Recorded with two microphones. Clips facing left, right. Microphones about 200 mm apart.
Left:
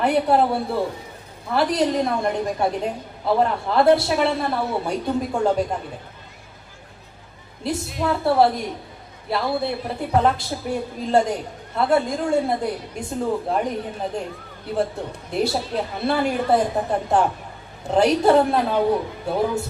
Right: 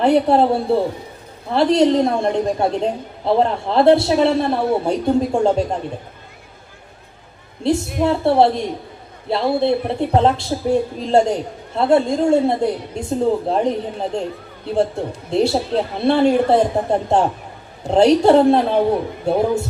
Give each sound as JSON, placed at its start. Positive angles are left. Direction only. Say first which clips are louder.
{"t": 0.0, "sound": "a woman's voice", "louder": "right 4 dB", "side_deg": -25}
{"t": 7.6, "sound": "a woman's voice", "louder": "right 6 dB", "side_deg": -25}
{"t": 15.3, "sound": "a woman's voice", "louder": "right 6 dB", "side_deg": -25}